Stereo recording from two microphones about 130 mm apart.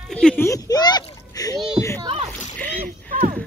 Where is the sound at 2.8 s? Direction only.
90° right.